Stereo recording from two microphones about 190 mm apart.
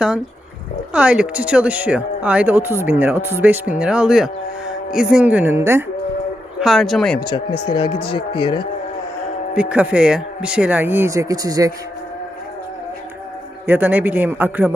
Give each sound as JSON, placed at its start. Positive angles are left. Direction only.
{"t": 0.9, "sound": "speech", "side_deg": -5}
{"t": 6.6, "sound": "speech", "side_deg": 0}
{"t": 7.2, "sound": "speech", "side_deg": 25}
{"t": 9.6, "sound": "speech", "side_deg": -5}
{"t": 13.7, "sound": "speech", "side_deg": -10}